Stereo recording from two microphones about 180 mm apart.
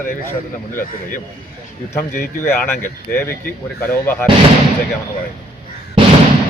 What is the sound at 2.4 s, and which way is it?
Speech, 10° left (ahead or behind).